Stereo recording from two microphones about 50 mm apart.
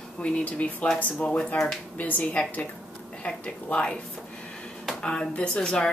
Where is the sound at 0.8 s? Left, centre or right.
Left.